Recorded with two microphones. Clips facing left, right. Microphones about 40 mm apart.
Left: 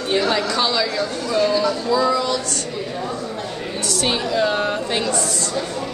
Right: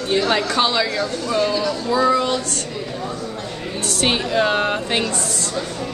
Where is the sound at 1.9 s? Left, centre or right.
Right.